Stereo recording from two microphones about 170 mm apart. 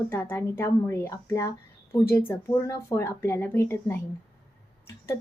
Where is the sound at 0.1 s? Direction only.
15° left (ahead or behind).